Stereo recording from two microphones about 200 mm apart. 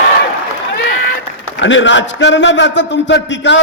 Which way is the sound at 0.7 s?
45° left (ahead or behind).